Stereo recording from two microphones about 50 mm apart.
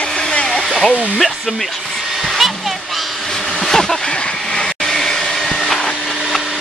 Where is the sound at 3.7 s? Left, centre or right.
Centre.